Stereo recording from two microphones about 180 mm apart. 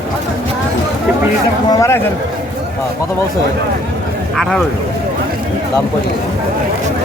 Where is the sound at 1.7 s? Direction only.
15° left (ahead or behind).